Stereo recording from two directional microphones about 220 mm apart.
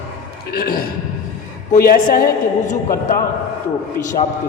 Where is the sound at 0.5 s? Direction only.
45° left (ahead or behind).